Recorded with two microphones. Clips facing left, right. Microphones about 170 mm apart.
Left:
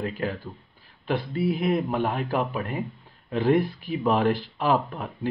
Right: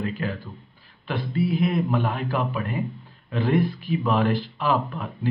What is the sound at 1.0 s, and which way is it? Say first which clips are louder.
Speech: even; 45° left (ahead or behind).